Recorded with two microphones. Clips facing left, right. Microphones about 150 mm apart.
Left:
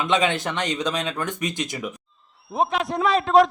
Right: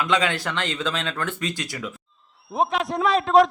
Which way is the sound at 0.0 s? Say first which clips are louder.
Left 1 dB; 20° left (ahead or behind).